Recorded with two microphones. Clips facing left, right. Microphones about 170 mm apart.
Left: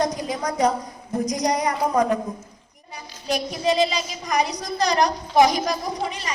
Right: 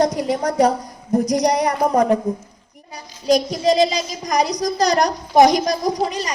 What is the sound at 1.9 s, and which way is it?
A child's voice, 35° right (ahead or behind).